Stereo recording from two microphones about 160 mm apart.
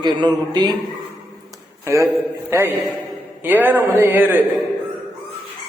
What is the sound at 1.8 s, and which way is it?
A man's voice, 20° right (ahead or behind).